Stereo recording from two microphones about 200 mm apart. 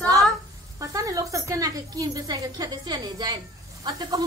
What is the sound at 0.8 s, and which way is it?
A woman's voice, 15° right (ahead or behind).